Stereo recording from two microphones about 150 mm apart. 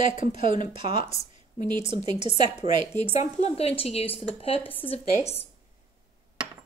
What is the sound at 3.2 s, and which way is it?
Speech, 45° left (ahead or behind).